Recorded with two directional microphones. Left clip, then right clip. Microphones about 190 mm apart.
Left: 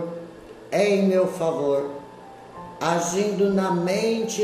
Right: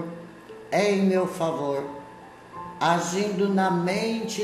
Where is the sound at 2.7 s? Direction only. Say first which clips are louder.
Even; 15° right (ahead or behind).